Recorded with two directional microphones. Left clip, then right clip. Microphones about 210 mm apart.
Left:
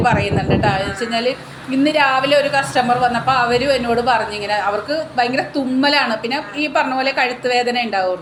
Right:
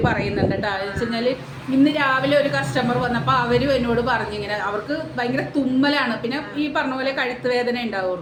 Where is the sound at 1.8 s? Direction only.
5° right (ahead or behind).